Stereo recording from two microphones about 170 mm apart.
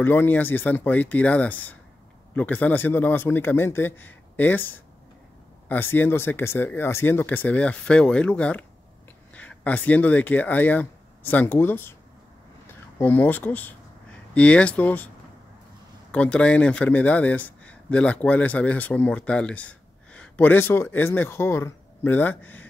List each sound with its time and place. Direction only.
0.0 s speech: 10° left (ahead or behind)
13.0 s speech: 10° left (ahead or behind)
16.1 s speech: 5° left (ahead or behind)